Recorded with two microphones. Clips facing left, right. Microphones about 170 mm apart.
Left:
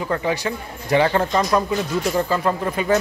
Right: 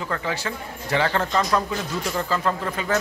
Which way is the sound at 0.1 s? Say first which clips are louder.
Left 6 dB; 15° left (ahead or behind).